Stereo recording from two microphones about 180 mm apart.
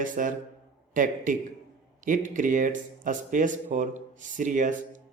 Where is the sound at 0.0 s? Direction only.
45° right (ahead or behind).